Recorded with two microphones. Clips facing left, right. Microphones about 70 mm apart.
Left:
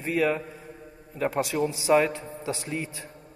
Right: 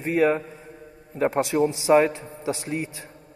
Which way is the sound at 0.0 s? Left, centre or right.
Right.